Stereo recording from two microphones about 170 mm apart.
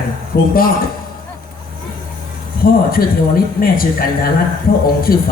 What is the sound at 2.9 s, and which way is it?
A man's voice, 60° left (ahead or behind).